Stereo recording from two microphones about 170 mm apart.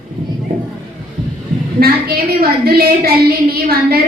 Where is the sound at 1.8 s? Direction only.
60° right (ahead or behind).